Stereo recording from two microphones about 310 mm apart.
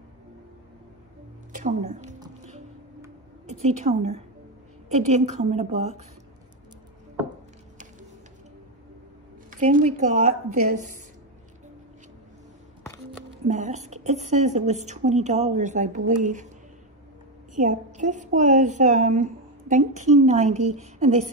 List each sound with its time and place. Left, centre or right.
1.5 s music: right
3.4 s a woman's voice: right
9.5 s a woman's voice: right
13.5 s a woman's voice: right
17.6 s a woman's voice: right